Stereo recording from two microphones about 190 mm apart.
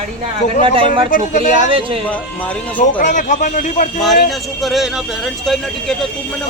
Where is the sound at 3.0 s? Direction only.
40° left (ahead or behind).